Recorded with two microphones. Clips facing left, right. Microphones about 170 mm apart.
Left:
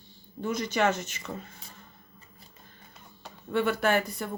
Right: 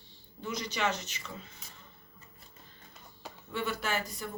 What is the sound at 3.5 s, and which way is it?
Speech, 55° left (ahead or behind).